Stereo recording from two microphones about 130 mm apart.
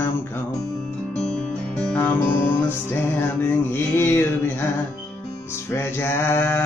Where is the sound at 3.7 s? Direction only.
15° left (ahead or behind).